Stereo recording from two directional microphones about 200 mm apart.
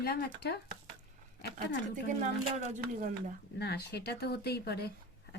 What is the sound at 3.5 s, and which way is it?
Speech, 55° left (ahead or behind).